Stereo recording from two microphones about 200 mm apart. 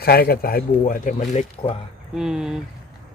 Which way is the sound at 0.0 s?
50° left (ahead or behind).